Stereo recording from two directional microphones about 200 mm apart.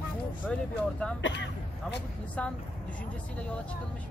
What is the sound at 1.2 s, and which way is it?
Speech, 65° left (ahead or behind).